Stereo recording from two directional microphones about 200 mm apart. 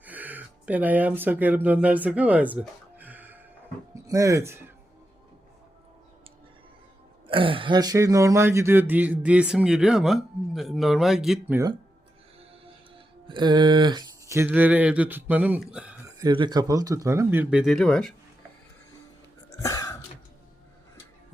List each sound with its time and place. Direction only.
0.0 s speech: 10° right (ahead or behind)
7.3 s speech: 25° right (ahead or behind); by 11.6 s 5° right (ahead or behind)
13.2 s speech: 25° right (ahead or behind); by 16.0 s 5° right (ahead or behind)
16.2 s speech: 20° right (ahead or behind); by 18.1 s 5° left (ahead or behind)
19.5 s throat clearing: 15° left (ahead or behind)